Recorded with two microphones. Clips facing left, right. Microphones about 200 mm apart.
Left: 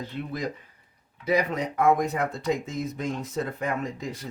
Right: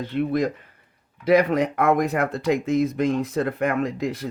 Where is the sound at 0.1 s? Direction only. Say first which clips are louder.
Right 11 dB; 65° right (ahead or behind).